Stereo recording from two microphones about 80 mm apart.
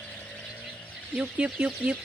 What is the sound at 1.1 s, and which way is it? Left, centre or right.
Speech, centre.